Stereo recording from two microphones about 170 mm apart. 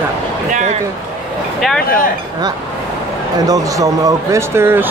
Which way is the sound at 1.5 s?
Centre (ahead or behind).